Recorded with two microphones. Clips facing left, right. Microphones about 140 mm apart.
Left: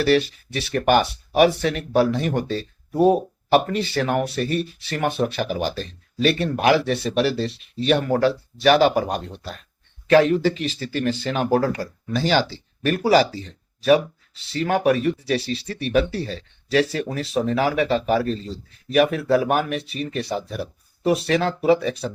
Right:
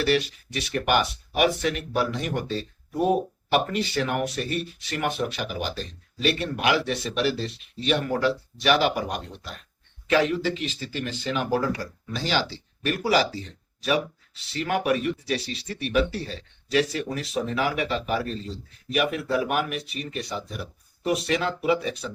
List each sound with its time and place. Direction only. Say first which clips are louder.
0.0 s speech: left 5 dB; 35° left (ahead or behind)
10.1 s speech: left 6 dB; 50° left (ahead or behind)
11.5 s speech: left 5 dB; 60° left (ahead or behind)
12.2 s speech: left 6 dB; 45° left (ahead or behind)
14.6 s speech: left 5 dB; 35° left (ahead or behind)